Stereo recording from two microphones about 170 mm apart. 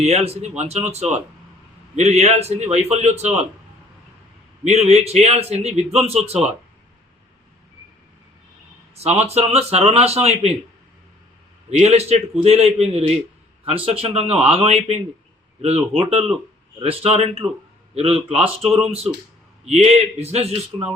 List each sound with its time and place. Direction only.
0.0 s a man's voice: 40° right (ahead or behind)
4.6 s a man's voice: 40° right (ahead or behind)
9.0 s a man's voice: 40° right (ahead or behind)
11.7 s a man's voice: 40° right (ahead or behind)